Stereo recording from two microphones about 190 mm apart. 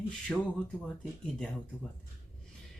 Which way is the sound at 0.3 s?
10° left (ahead or behind).